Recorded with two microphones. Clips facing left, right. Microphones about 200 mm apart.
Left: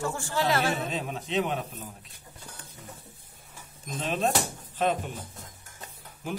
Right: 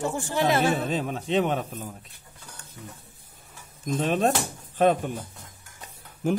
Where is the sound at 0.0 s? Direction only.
20° right (ahead or behind).